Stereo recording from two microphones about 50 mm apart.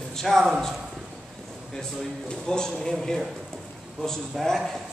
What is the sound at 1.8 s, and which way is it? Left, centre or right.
Speech, centre.